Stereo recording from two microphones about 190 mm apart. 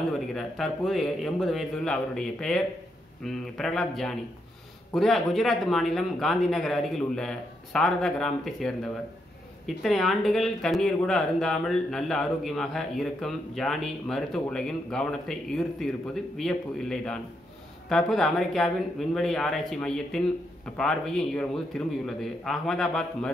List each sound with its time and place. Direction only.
0.3 s speech: centre (ahead or behind)